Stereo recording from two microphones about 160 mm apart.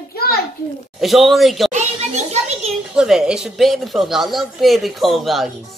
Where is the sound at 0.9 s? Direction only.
Centre (ahead or behind).